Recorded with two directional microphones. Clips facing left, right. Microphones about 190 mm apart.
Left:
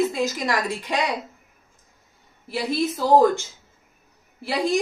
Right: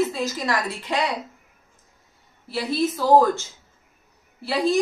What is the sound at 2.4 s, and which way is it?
Speech, 15° left (ahead or behind).